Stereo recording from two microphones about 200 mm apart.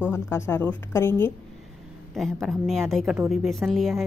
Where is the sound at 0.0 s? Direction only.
10° left (ahead or behind).